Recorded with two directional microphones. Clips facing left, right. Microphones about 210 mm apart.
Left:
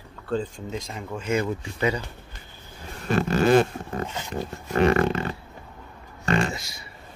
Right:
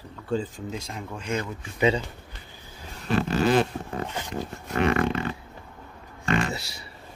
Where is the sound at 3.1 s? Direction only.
50° left (ahead or behind).